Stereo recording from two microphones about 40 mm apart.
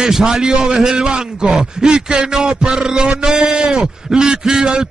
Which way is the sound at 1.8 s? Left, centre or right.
Right.